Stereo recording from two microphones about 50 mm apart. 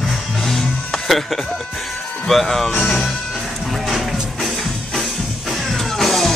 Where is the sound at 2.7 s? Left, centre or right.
Left.